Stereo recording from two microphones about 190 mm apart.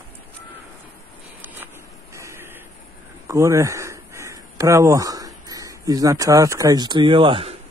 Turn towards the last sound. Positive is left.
turn(degrees=-30)  # may be behind; listen again after turning